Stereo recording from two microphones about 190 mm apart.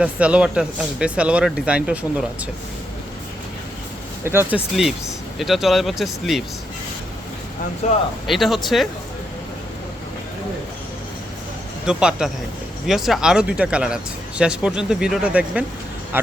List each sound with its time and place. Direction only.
0.0 s speech: 5° right (ahead or behind)
4.2 s speech: 10° right (ahead or behind)
4.5 s speech: centre (ahead or behind)
7.8 s speech: 35° left (ahead or behind)
8.3 s speech: centre (ahead or behind)
11.9 s speech: 5° right (ahead or behind)